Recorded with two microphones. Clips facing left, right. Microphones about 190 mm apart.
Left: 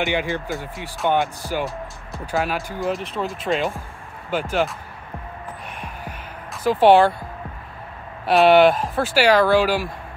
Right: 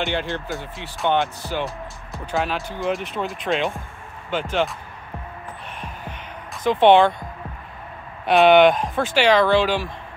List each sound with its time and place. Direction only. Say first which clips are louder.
0.0 s speech: left 2 dB; 10° left (ahead or behind)
5.8 s heart sounds: left 1 dB; 10° left (ahead or behind)
8.3 s speech: even; 5° left (ahead or behind)